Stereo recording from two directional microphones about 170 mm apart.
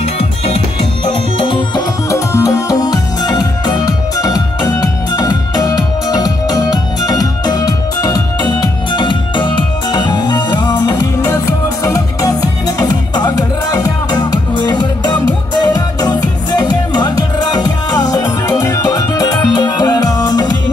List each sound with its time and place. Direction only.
2.0 s music: 20° left (ahead or behind)